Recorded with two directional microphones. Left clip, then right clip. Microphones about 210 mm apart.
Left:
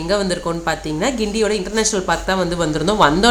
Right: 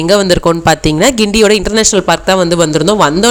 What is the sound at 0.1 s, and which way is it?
A woman's voice, 45° right (ahead or behind).